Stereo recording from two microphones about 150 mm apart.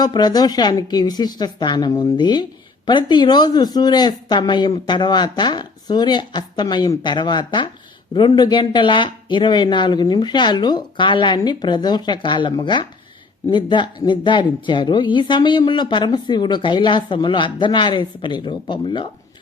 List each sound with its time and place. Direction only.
0.0 s a woman's voice: 30° left (ahead or behind)